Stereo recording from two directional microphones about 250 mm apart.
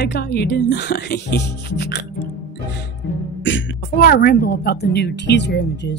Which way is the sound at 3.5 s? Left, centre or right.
Left.